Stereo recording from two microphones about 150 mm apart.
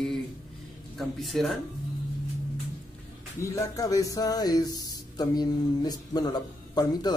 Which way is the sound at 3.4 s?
20° left (ahead or behind).